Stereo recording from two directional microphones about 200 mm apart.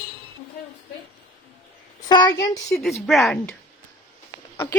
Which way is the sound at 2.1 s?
20° left (ahead or behind).